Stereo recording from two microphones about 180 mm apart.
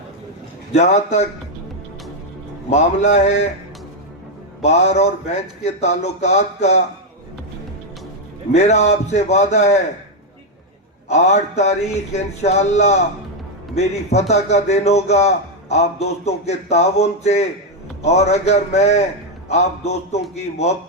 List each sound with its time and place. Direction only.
0.7 s a man's voice: 40° left (ahead or behind)
2.6 s a man's voice: 40° left (ahead or behind)
4.6 s a man's voice: 40° left (ahead or behind)
8.5 s a man's voice: 40° left (ahead or behind)
11.1 s a man's voice: 40° left (ahead or behind)